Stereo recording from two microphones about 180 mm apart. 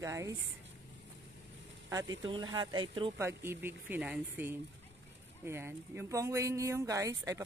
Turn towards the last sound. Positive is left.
turn(degrees=-20)  # may be behind; listen again after turning